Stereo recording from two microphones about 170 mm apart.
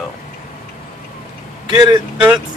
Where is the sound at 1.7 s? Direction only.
25° right (ahead or behind).